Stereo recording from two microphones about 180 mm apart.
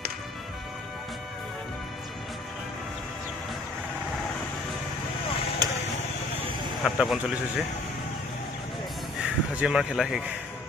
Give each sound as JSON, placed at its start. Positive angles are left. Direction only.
{"t": 5.6, "sound": "vehicle", "side_deg": -20}
{"t": 6.8, "sound": "speech", "side_deg": 0}
{"t": 9.2, "sound": "speech", "side_deg": -5}